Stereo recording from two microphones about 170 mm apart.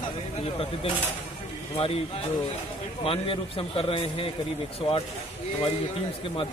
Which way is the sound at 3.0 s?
35° left (ahead or behind).